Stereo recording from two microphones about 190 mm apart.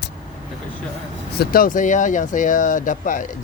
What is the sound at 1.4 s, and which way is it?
Speech, 50° left (ahead or behind).